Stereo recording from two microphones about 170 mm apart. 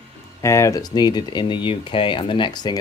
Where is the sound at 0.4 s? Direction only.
15° left (ahead or behind).